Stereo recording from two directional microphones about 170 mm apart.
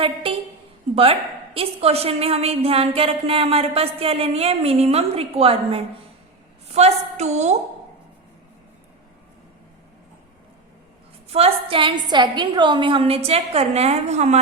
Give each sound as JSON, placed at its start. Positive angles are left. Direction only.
{"t": 0.0, "sound": "a sound", "side_deg": -30}
{"t": 1.5, "sound": "a woman's voice", "side_deg": -35}
{"t": 11.3, "sound": "a woman's voice", "side_deg": -35}